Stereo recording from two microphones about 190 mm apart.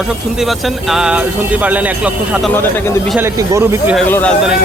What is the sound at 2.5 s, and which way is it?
Speech, 10° left (ahead or behind).